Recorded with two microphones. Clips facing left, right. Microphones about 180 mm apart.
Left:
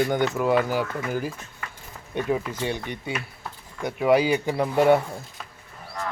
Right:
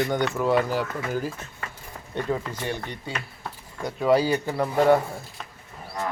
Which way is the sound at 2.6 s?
15° left (ahead or behind).